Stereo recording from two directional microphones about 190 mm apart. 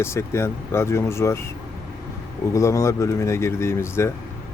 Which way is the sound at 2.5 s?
15° left (ahead or behind).